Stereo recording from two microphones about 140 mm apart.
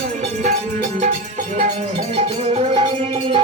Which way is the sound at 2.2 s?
45° right (ahead or behind).